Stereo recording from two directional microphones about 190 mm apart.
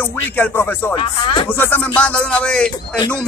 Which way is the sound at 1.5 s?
10° left (ahead or behind).